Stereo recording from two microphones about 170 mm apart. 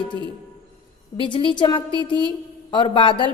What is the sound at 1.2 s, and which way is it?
A woman's voice, 30° left (ahead or behind).